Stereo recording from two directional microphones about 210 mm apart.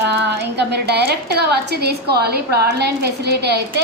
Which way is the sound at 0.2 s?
55° right (ahead or behind).